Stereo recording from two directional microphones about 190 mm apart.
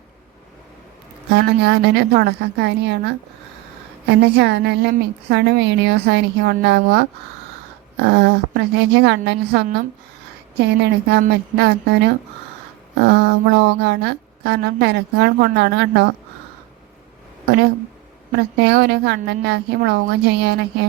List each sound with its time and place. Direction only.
1.3 s a woman's voice: 60° right (ahead or behind)
8.0 s a woman's voice: 60° right (ahead or behind)
18.3 s a woman's voice: 60° right (ahead or behind)